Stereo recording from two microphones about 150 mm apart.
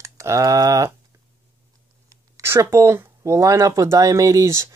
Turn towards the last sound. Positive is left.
turn(degrees=-20)  # may be behind; listen again after turning